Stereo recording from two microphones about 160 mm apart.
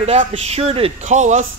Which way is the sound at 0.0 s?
40° right (ahead or behind).